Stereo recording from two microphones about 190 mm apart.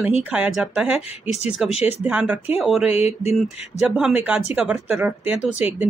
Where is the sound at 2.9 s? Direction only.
35° left (ahead or behind).